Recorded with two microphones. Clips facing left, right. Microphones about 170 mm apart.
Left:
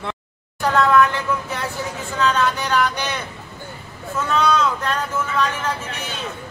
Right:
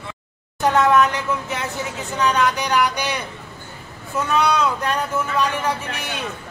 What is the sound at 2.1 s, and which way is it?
Speech, 15° right (ahead or behind).